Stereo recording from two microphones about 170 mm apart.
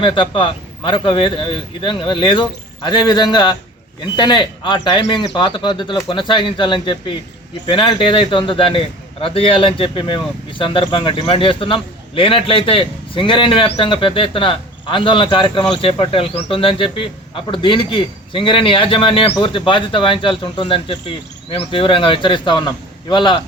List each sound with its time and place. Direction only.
0.0 s a man's voice: 30° left (ahead or behind)